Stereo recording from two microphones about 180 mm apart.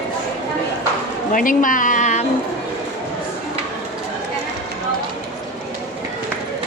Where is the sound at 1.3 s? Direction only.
50° left (ahead or behind).